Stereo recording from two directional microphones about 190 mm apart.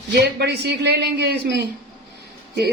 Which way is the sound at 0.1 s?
60° right (ahead or behind).